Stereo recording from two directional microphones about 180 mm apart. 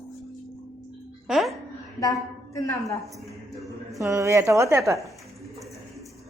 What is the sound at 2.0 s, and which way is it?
Speech, 60° left (ahead or behind).